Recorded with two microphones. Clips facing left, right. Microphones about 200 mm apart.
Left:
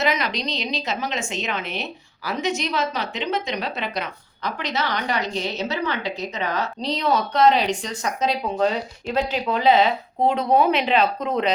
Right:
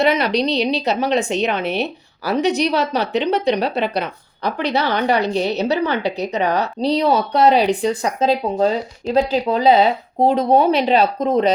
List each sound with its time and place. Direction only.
0.0 s speech: 30° right (ahead or behind)
5.1 s a woman's voice: 65° right (ahead or behind)
5.6 s speech: 35° right (ahead or behind)